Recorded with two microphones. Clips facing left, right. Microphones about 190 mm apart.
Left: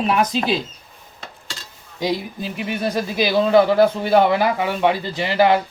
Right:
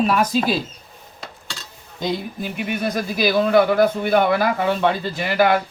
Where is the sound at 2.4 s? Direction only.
30° left (ahead or behind).